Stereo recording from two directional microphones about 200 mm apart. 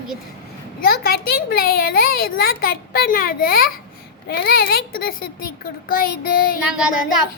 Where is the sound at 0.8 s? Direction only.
50° left (ahead or behind).